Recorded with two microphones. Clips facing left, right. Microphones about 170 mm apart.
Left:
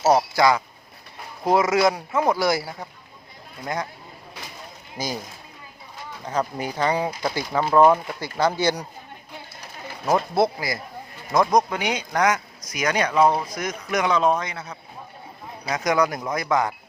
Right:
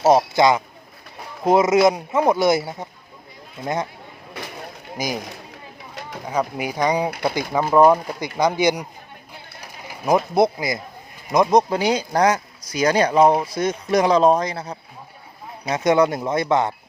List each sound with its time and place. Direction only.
0.0 s speech: 20° right (ahead or behind)
4.9 s speech: 15° right (ahead or behind)
5.9 s bird: 80° right
6.2 s speech: 10° right (ahead or behind)
9.6 s a sound: 10° right (ahead or behind)
11.3 s speech: 20° right (ahead or behind)
11.7 s speech: 35° right (ahead or behind)